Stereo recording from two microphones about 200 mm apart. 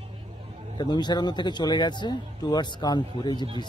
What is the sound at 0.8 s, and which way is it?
Speech, 20° left (ahead or behind).